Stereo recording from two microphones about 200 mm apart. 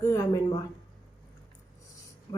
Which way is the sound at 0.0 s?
15° left (ahead or behind).